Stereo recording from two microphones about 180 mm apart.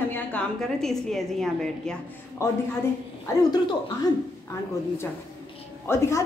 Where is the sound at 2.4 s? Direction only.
15° left (ahead or behind).